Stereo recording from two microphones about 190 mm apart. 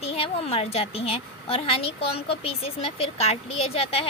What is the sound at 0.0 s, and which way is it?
A woman's voice, 30° left (ahead or behind).